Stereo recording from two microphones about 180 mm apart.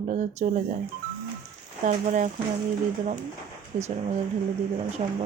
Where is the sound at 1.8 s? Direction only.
45° right (ahead or behind).